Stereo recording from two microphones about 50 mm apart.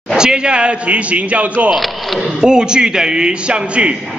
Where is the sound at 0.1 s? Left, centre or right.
Centre.